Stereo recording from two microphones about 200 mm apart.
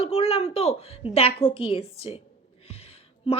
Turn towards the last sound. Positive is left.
turn(degrees=30)  # may be behind; listen again after turning